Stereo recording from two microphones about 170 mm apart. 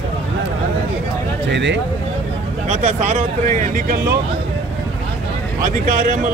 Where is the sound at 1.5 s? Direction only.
90° right.